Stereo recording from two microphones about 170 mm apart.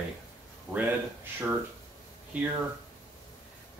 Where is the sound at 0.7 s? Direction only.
5° right (ahead or behind).